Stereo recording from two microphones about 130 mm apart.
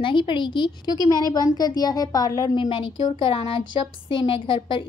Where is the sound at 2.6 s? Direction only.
40° left (ahead or behind).